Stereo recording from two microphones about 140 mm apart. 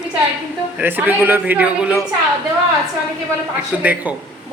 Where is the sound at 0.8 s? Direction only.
15° right (ahead or behind).